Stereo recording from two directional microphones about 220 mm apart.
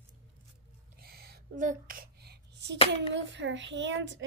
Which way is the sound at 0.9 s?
45° right (ahead or behind).